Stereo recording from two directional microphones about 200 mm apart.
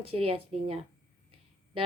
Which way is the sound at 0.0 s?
30° right (ahead or behind).